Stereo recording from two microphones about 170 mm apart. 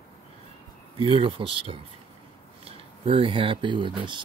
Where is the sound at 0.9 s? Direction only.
30° right (ahead or behind).